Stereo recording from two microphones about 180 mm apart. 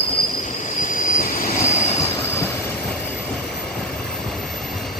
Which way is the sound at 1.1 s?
50° left (ahead or behind).